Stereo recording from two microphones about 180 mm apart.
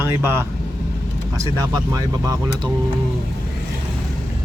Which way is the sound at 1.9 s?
20° right (ahead or behind).